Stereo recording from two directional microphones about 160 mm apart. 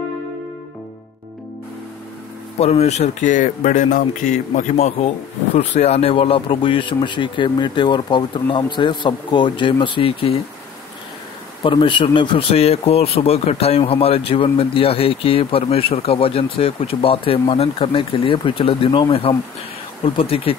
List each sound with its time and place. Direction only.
2.6 s speech: 40° left (ahead or behind)
11.6 s speech: 30° left (ahead or behind)